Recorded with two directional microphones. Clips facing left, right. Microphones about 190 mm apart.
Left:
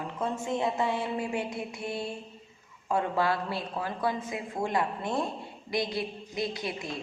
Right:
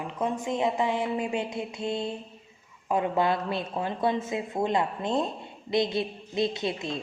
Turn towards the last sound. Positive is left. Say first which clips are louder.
# right 4 dB
turn(degrees=-25)  # may be behind; listen again after turning